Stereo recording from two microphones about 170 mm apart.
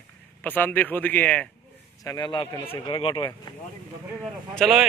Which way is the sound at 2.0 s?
25° left (ahead or behind).